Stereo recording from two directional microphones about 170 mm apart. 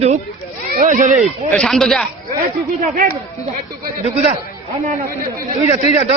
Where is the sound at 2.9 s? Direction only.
55° right (ahead or behind).